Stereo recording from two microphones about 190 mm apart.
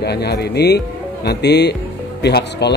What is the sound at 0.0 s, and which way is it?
Speech, 60° left (ahead or behind).